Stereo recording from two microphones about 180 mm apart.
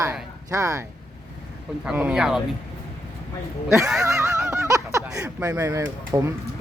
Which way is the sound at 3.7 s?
Centre (ahead or behind).